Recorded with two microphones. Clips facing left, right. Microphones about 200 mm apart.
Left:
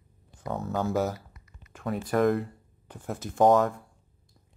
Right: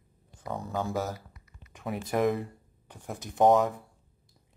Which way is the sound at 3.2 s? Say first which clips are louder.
Left 1 dB; centre (ahead or behind).